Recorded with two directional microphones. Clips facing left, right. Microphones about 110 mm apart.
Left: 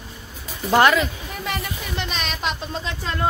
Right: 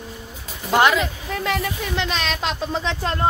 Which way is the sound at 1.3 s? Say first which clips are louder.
Right 5 dB; 90° right.